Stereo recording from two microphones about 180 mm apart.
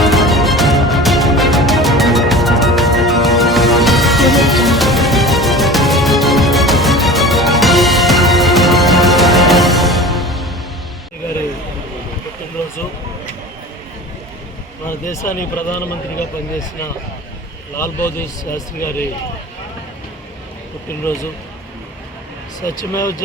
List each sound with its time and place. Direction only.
0.0 s music: centre (ahead or behind)
15.5 s a man's voice: 10° left (ahead or behind)
17.7 s a man's voice: 10° left (ahead or behind)
21.1 s a man's voice: 15° left (ahead or behind)
22.9 s a man's voice: 15° left (ahead or behind)